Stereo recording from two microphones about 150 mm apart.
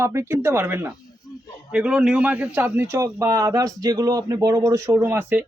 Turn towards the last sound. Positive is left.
turn(degrees=-15)  # may be behind; listen again after turning